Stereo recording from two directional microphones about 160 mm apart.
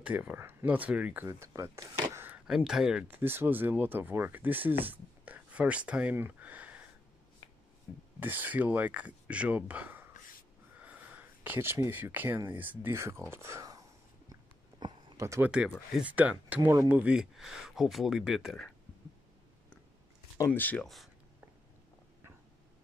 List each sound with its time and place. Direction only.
0.0 s speech: 10° right (ahead or behind)
8.2 s speech: 10° right (ahead or behind)
14.8 s a sound: 25° right (ahead or behind)
16.0 s speech: 10° right (ahead or behind)
16.7 s speech: 20° right (ahead or behind)
17.0 s speech: 5° right (ahead or behind)
20.3 s speech: 15° left (ahead or behind)